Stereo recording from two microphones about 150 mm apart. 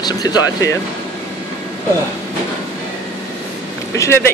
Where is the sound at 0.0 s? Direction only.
25° left (ahead or behind).